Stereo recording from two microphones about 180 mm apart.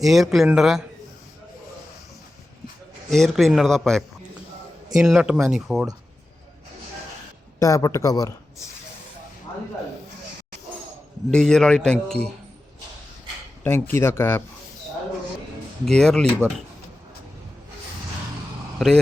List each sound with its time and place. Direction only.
0.0 s a man's voice: centre (ahead or behind)
3.1 s a man's voice: centre (ahead or behind)
7.6 s speech: 20° left (ahead or behind)
11.3 s a man's voice: 5° left (ahead or behind)
13.7 s speech: 15° left (ahead or behind)
15.9 s a man's voice: 5° left (ahead or behind)
16.4 s speech: 15° right (ahead or behind)
18.8 s a man's voice: centre (ahead or behind)